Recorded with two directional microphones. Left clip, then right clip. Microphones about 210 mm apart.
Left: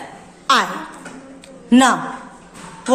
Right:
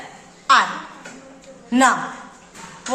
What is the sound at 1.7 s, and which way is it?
Speech, 40° left (ahead or behind).